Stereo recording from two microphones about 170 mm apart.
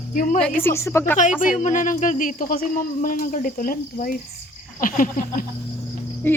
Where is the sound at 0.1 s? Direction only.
50° left (ahead or behind).